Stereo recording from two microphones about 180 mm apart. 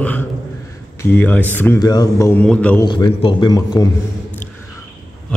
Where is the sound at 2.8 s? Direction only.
25° left (ahead or behind).